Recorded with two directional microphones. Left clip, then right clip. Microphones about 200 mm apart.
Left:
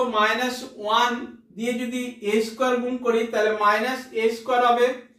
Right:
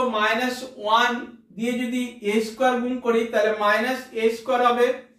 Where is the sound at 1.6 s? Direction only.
10° left (ahead or behind).